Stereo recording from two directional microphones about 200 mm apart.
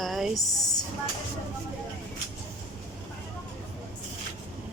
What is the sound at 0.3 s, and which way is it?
Speech, 20° left (ahead or behind).